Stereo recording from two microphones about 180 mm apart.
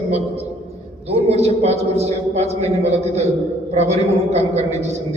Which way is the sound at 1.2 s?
35° right (ahead or behind).